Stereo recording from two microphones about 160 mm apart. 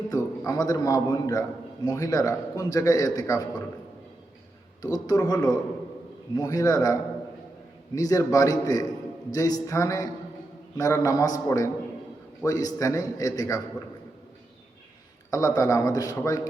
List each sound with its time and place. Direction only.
0.1 s a man's voice: 20° left (ahead or behind)
4.8 s a man's voice: 25° left (ahead or behind)
7.9 s a man's voice: 20° left (ahead or behind)
15.3 s a man's voice: 20° left (ahead or behind)